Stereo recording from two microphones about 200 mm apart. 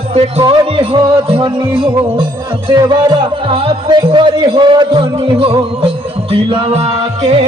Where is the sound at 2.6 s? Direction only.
20° right (ahead or behind).